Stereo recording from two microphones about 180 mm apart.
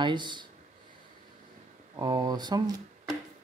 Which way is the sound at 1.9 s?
20° right (ahead or behind).